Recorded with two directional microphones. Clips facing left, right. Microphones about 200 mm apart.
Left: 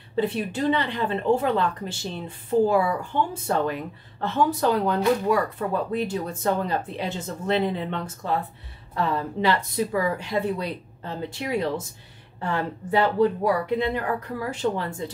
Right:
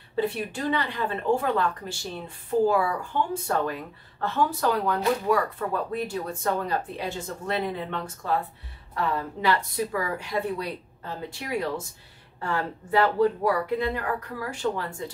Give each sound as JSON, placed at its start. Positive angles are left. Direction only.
{"t": 0.1, "sound": "speech", "side_deg": 20}